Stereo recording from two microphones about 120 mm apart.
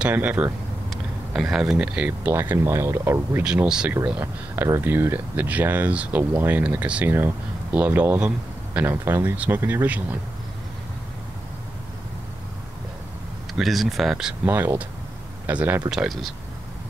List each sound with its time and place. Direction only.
0.0 s speech: 15° right (ahead or behind)
3.4 s speech: 5° right (ahead or behind)
13.6 s speech: centre (ahead or behind)
14.4 s speech: 20° right (ahead or behind)
15.9 s speech: centre (ahead or behind)